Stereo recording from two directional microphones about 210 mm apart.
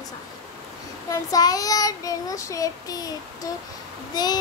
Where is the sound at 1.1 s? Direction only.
15° left (ahead or behind).